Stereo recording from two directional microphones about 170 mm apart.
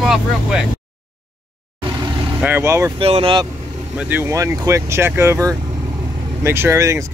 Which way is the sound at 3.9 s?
10° right (ahead or behind).